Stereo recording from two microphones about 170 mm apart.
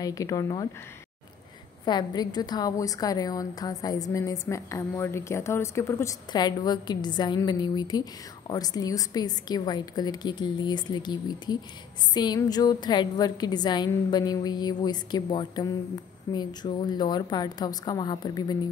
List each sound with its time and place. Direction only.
0.0 s a woman's voice: 20° left (ahead or behind)
1.9 s a woman's voice: 25° left (ahead or behind)